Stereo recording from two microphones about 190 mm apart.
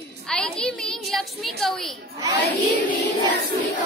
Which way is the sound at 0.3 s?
5° left (ahead or behind).